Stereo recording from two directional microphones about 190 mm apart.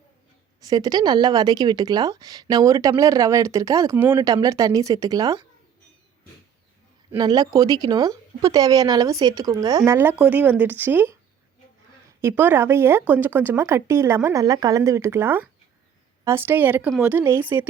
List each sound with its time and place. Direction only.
0.6 s a woman's voice: 20° right (ahead or behind)
7.1 s speech: 20° right (ahead or behind)
12.2 s speech: 10° right (ahead or behind)